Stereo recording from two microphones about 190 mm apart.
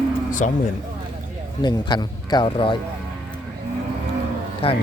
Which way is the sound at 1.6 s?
25° left (ahead or behind).